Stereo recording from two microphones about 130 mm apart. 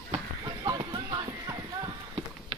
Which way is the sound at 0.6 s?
30° right (ahead or behind).